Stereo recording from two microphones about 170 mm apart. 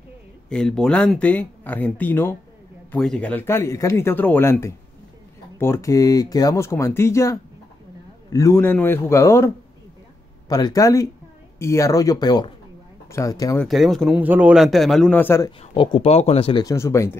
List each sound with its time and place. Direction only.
0.5 s speech: 5° left (ahead or behind)
10.5 s a man's voice: 20° left (ahead or behind)
13.6 s a man's voice: centre (ahead or behind)
15.6 s speech: 30° left (ahead or behind)
16.6 s speech: 15° left (ahead or behind)